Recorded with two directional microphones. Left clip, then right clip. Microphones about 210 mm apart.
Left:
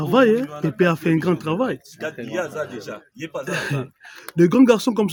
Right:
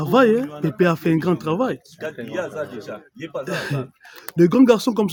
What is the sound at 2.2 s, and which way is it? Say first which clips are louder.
Speech: left 1 dB; 40° left (ahead or behind).